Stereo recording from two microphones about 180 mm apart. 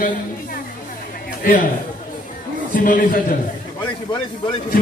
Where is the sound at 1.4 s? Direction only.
50° left (ahead or behind).